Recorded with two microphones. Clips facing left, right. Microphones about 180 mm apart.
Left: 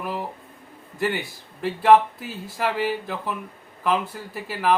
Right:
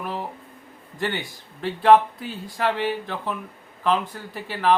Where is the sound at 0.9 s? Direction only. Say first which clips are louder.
Left 2 dB; 5° left (ahead or behind).